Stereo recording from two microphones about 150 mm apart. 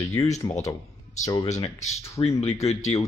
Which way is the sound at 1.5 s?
50° left (ahead or behind).